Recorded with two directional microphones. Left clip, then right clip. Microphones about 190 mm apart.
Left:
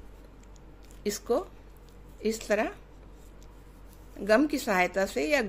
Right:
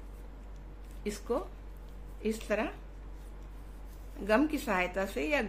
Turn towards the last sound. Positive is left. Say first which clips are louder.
# left 5 dB
turn(degrees=35)  # may be behind; listen again after turning